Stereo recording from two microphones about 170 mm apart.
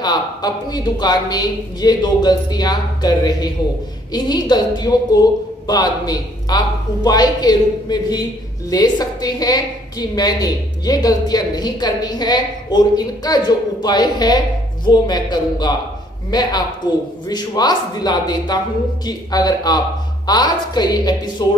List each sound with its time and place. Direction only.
0.0 s a woman's voice: 25° left (ahead or behind)